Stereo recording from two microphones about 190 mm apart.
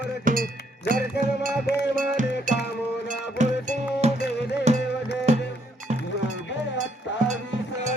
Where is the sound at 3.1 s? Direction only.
40° right (ahead or behind).